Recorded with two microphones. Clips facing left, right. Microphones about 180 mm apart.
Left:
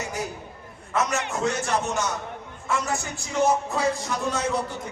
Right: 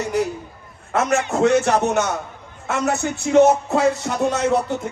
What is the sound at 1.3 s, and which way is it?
Speech, 65° right (ahead or behind).